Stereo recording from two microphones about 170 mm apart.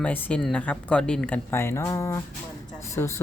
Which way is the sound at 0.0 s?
10° left (ahead or behind).